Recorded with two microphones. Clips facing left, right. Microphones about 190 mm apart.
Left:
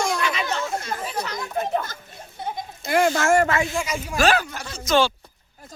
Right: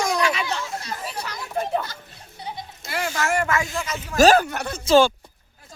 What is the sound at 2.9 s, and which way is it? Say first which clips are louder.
Speech: left 7 dB; 50° left (ahead or behind).